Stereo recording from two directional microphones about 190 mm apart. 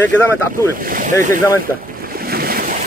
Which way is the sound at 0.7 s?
45° right (ahead or behind).